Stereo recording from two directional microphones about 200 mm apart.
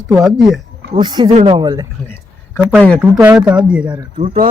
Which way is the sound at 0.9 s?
20° right (ahead or behind).